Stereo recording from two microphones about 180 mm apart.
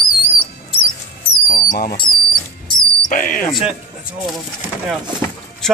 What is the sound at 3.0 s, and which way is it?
Speech, 50° left (ahead or behind).